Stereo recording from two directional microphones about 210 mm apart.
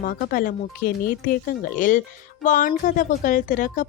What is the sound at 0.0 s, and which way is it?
Speech, 45° left (ahead or behind).